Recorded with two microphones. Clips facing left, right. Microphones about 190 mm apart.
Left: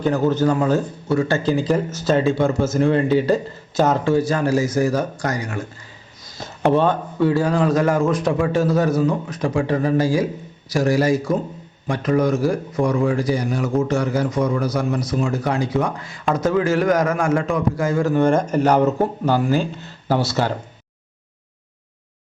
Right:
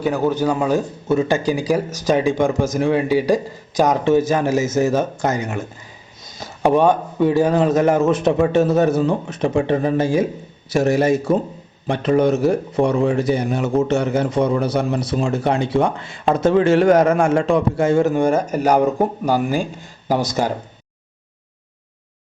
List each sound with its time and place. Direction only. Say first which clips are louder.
0.0 s speech: left 1 dB; 10° right (ahead or behind); by 18.1 s 25° right (ahead or behind)
18.1 s speech: left 1 dB; 10° right (ahead or behind)